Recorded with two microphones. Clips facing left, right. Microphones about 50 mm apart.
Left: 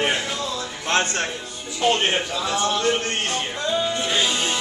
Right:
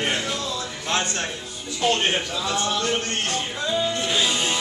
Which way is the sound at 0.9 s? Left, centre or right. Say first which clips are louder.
Left 4 dB; left.